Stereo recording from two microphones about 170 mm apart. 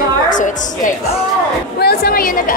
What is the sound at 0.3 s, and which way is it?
Speech, 50° left (ahead or behind).